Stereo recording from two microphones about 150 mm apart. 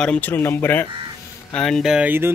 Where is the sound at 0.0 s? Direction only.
10° left (ahead or behind).